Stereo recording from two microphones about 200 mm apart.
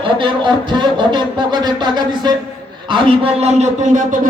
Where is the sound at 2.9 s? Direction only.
25° right (ahead or behind).